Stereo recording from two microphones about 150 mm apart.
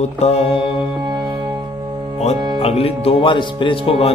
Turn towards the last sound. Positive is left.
turn(degrees=35)  # may be behind; listen again after turning